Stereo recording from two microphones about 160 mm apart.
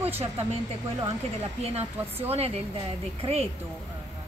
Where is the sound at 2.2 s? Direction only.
40° right (ahead or behind).